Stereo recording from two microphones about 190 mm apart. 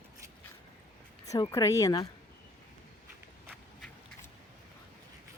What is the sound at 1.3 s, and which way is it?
Speech, 15° left (ahead or behind).